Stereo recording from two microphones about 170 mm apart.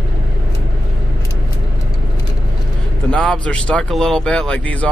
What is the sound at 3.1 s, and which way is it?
Speech, 5° left (ahead or behind).